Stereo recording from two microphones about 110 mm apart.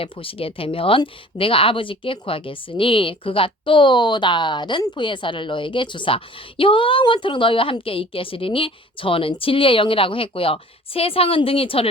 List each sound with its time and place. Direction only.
0.0 s a woman's voice: 55° left (ahead or behind)